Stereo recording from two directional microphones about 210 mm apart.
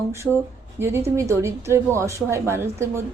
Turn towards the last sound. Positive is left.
turn(degrees=-10)  # may be behind; listen again after turning